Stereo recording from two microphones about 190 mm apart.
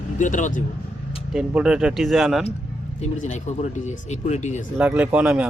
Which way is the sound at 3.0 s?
40° left (ahead or behind).